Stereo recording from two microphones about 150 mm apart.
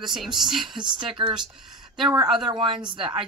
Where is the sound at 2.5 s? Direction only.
30° right (ahead or behind).